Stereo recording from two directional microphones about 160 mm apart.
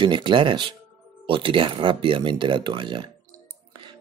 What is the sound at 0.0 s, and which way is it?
Speech, 30° right (ahead or behind).